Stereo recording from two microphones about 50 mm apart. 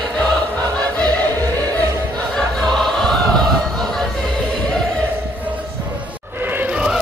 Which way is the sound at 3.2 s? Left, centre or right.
Centre.